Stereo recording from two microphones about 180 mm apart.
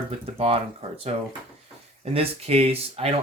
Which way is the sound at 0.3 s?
35° right (ahead or behind).